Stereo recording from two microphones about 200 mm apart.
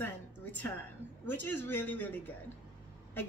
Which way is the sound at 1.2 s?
10° left (ahead or behind).